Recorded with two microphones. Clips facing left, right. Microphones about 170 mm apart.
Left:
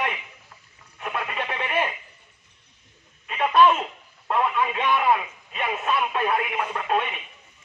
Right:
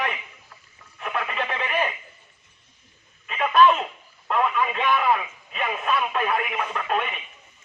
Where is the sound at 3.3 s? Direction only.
20° left (ahead or behind).